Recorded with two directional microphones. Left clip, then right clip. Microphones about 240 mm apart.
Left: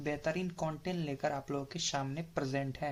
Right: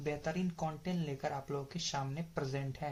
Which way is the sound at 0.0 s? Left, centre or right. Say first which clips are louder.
Left 3 dB; left.